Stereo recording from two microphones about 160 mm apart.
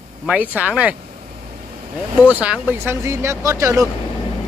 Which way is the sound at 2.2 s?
10° right (ahead or behind).